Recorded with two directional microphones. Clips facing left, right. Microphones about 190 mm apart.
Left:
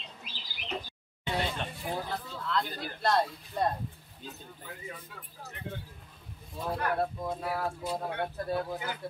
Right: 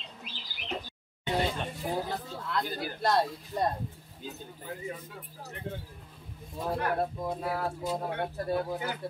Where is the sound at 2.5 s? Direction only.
10° right (ahead or behind).